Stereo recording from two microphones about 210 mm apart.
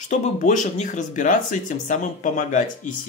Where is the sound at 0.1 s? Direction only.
35° left (ahead or behind).